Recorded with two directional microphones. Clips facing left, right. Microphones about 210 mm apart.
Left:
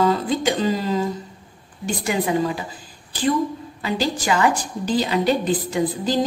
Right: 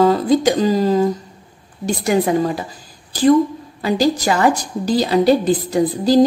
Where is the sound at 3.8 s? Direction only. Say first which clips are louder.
Right 6 dB; 40° right (ahead or behind).